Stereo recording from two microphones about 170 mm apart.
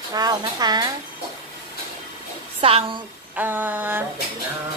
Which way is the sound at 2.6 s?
35° right (ahead or behind).